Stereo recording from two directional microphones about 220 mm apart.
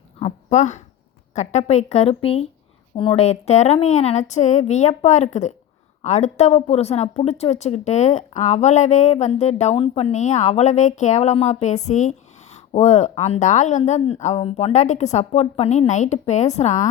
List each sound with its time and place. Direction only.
0.2 s a woman's voice: 30° left (ahead or behind)